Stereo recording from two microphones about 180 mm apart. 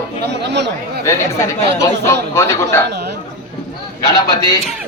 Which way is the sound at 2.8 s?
65° right (ahead or behind).